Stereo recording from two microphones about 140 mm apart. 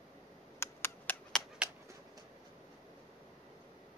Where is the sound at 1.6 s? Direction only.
5° right (ahead or behind).